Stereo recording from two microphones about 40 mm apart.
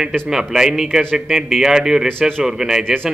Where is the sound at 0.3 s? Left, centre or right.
Centre.